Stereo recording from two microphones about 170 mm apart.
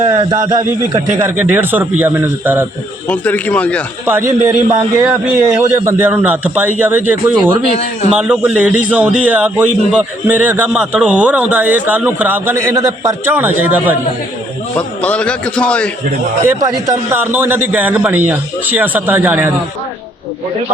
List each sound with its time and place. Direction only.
0.4 s a man's voice: 20° right (ahead or behind)
1.2 s a man's voice: 10° right (ahead or behind)
3.1 s a man's voice: 10° left (ahead or behind)
4.0 s a man's voice: 15° right (ahead or behind)
14.8 s a man's voice: 5° left (ahead or behind)
16.4 s a man's voice: 15° right (ahead or behind)